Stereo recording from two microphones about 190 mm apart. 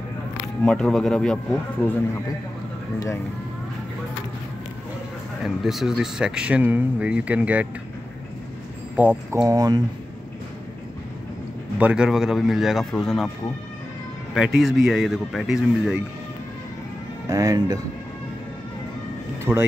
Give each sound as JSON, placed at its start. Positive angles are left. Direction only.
{"t": 0.7, "sound": "speech", "side_deg": 5}
{"t": 5.4, "sound": "speech", "side_deg": 0}
{"t": 8.9, "sound": "speech", "side_deg": -10}
{"t": 9.4, "sound": "speech", "side_deg": -20}
{"t": 11.8, "sound": "speech", "side_deg": -5}
{"t": 14.3, "sound": "speech", "side_deg": 0}
{"t": 17.3, "sound": "speech", "side_deg": -20}
{"t": 19.5, "sound": "speech", "side_deg": -15}